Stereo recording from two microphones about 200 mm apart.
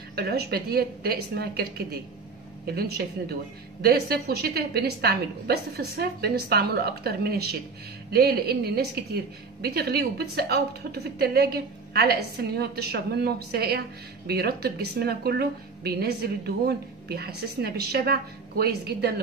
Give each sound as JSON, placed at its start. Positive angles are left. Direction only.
{"t": 0.1, "sound": "a woman's voice", "side_deg": -50}
{"t": 3.8, "sound": "a woman's voice", "side_deg": -50}